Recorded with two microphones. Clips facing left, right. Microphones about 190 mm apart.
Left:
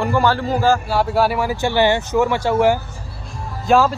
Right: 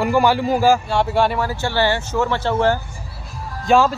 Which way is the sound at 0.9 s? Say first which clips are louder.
Left 1 dB; 5° left (ahead or behind).